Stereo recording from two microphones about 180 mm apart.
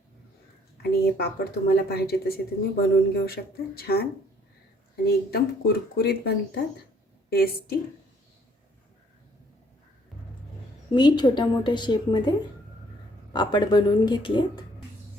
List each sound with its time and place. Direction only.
0.8 s speech: 60° left (ahead or behind)
5.0 s speech: 60° left (ahead or behind)
10.9 s a woman's voice: 25° left (ahead or behind)
13.3 s a woman's voice: 25° left (ahead or behind)